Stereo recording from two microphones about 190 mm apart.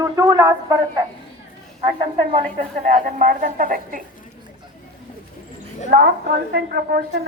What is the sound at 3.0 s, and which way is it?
A woman's voice, 45° right (ahead or behind).